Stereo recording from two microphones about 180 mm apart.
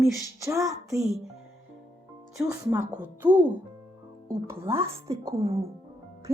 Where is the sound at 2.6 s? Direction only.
15° right (ahead or behind).